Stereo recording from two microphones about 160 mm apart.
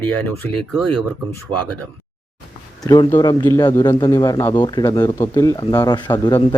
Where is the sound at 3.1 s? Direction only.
15° left (ahead or behind).